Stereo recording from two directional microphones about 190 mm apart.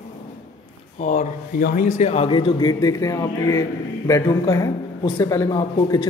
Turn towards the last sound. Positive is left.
turn(degrees=20)  # may be behind; listen again after turning